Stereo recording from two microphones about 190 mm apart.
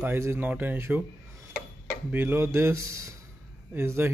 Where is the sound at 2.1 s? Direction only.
10° right (ahead or behind).